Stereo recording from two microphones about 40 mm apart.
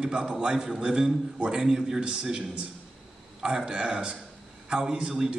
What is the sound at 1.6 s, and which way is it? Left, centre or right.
A man's voice, centre.